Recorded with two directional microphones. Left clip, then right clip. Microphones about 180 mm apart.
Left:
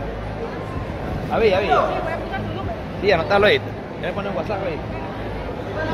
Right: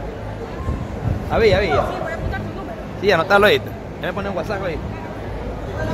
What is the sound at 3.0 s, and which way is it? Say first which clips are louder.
Speech: right 2 dB; 35° right (ahead or behind).